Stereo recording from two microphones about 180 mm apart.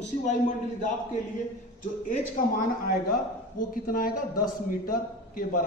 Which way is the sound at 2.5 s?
45° left (ahead or behind).